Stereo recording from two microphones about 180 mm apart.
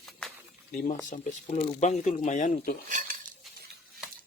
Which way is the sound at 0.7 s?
45° left (ahead or behind).